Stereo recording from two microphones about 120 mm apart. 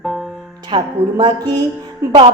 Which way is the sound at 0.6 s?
40° right (ahead or behind).